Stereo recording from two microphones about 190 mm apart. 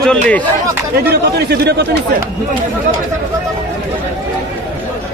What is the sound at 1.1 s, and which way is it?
Speech, 60° right (ahead or behind).